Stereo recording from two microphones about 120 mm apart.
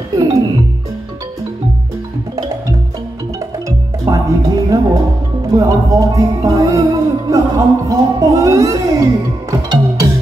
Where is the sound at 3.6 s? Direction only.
25° right (ahead or behind).